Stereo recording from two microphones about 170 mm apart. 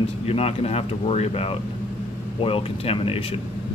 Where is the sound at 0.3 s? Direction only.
35° left (ahead or behind).